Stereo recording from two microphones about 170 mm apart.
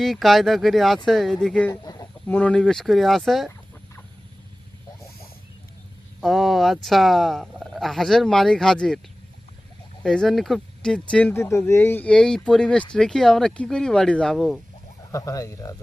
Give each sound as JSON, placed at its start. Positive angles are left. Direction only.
{"t": 0.0, "sound": "speech", "side_deg": 0}
{"t": 1.8, "sound": "chicken", "side_deg": 25}
{"t": 2.2, "sound": "speech", "side_deg": 10}
{"t": 6.1, "sound": "speech", "side_deg": 0}
{"t": 10.0, "sound": "speech", "side_deg": 5}
{"t": 15.1, "sound": "speech", "side_deg": 20}